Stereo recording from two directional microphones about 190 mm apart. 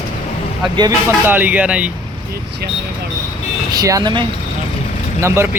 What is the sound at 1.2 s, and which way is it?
Speech, 10° right (ahead or behind).